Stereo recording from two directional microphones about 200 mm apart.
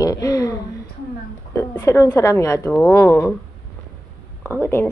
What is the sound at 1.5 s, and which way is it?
Speech, 15° left (ahead or behind).